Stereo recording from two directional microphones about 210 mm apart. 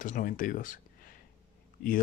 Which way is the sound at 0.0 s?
40° left (ahead or behind).